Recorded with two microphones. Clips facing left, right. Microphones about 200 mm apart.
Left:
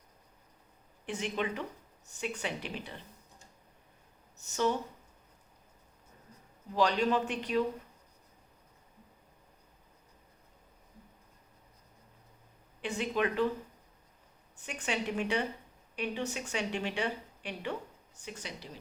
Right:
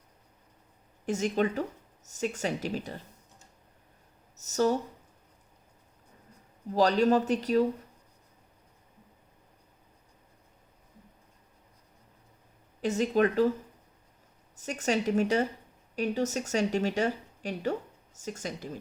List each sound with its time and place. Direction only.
1.0 s a woman's voice: 40° right (ahead or behind)
4.4 s speech: 40° right (ahead or behind)
6.7 s a woman's voice: 40° right (ahead or behind)
12.8 s a woman's voice: 40° right (ahead or behind)
14.5 s a woman's voice: 40° right (ahead or behind)